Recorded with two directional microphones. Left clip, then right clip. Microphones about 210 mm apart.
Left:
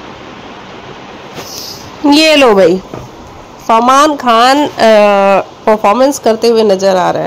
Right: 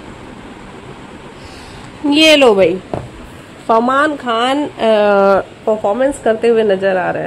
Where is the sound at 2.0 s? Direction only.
10° left (ahead or behind).